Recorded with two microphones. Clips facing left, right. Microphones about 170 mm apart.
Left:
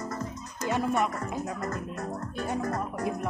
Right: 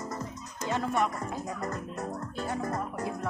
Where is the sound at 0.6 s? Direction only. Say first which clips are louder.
Left 2 dB; 15° left (ahead or behind).